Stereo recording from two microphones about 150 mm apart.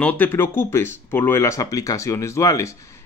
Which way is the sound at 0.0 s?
15° left (ahead or behind).